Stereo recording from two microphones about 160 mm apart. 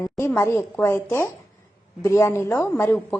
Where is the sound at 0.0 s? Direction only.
15° left (ahead or behind).